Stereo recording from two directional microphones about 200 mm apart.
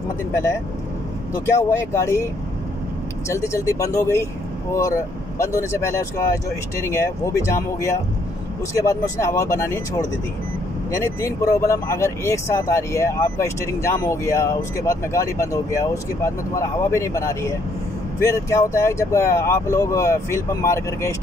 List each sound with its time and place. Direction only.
1.4 s speech: 15° left (ahead or behind)
3.3 s speech: 15° left (ahead or behind)
5.4 s speech: 15° left (ahead or behind)
11.1 s speech: 15° left (ahead or behind)